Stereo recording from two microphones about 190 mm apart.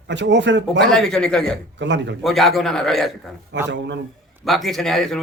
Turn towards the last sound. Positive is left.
turn(degrees=0)  # may be behind; listen again after turning